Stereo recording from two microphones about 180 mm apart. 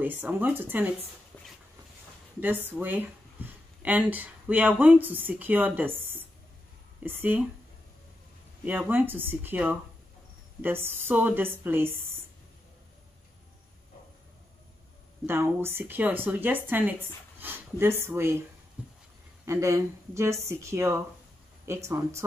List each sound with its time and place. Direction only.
0.0 s speech: 10° right (ahead or behind)
2.4 s speech: 10° right (ahead or behind)
7.0 s speech: 10° right (ahead or behind)
8.6 s speech: 10° right (ahead or behind)
15.2 s speech: 15° right (ahead or behind)
18.8 s writing: 5° right (ahead or behind)
19.4 s speech: 15° right (ahead or behind)